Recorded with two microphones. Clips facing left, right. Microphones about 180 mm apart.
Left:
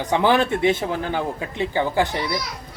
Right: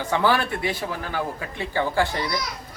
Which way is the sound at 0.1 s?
20° left (ahead or behind).